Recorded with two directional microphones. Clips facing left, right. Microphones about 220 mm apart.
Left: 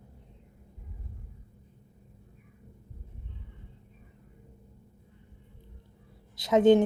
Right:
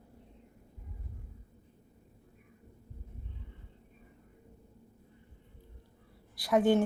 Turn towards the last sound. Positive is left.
turn(degrees=20)  # may be behind; listen again after turning